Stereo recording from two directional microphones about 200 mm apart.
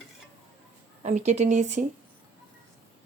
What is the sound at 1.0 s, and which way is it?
Speech, 35° right (ahead or behind).